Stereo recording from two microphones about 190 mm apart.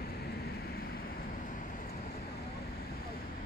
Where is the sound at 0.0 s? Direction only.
55° left (ahead or behind).